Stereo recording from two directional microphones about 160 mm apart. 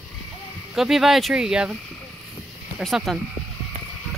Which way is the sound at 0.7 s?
Centre (ahead or behind).